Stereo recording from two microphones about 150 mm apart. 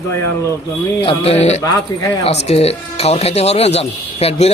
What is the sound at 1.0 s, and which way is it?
Speech, 40° left (ahead or behind).